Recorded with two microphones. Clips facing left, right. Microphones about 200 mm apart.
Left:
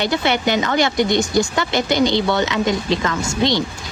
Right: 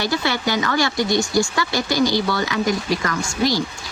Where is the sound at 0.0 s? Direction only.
20° left (ahead or behind).